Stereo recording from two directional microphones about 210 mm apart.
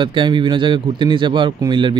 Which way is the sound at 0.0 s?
25° right (ahead or behind).